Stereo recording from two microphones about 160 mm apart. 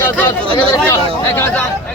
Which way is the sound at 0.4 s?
35° right (ahead or behind).